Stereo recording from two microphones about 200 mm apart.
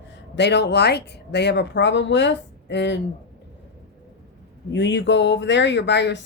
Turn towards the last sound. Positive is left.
turn(degrees=60)  # may be behind; listen again after turning